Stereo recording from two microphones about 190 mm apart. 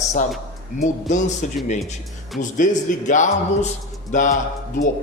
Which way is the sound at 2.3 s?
Centre (ahead or behind).